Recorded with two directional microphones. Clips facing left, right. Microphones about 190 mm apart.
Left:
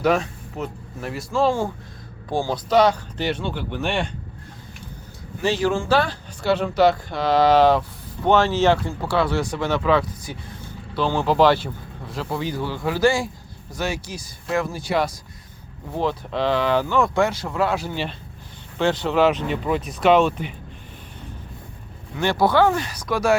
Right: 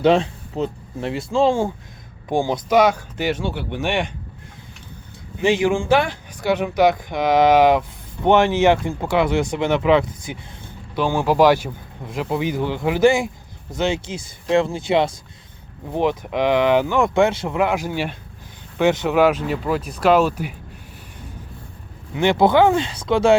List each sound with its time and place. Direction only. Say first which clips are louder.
0.0 s speech: right 4 dB; 25° right (ahead or behind)
5.4 s speech: right 3 dB; 15° right (ahead or behind)
22.1 s speech: right 4 dB; 20° right (ahead or behind)